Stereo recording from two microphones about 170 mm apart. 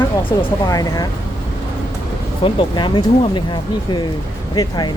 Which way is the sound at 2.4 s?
30° left (ahead or behind).